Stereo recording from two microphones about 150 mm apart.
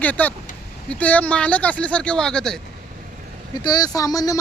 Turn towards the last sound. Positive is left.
turn(degrees=25)  # may be behind; listen again after turning